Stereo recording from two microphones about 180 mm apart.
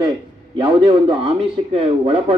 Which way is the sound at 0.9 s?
30° right (ahead or behind).